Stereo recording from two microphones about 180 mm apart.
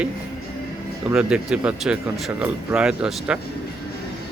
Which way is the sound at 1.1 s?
5° right (ahead or behind).